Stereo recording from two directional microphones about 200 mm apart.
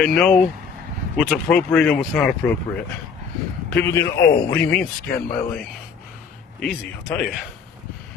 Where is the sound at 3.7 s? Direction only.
15° left (ahead or behind).